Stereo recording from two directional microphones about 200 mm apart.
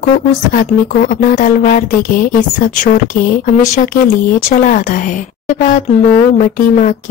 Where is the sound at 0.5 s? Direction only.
40° left (ahead or behind).